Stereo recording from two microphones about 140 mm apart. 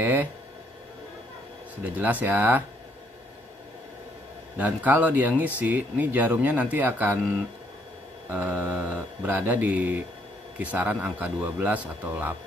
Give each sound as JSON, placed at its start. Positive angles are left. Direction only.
{"t": 0.0, "sound": "speech", "side_deg": -10}
{"t": 2.0, "sound": "speech", "side_deg": -10}
{"t": 4.6, "sound": "speech", "side_deg": -10}
{"t": 8.3, "sound": "speech", "side_deg": -15}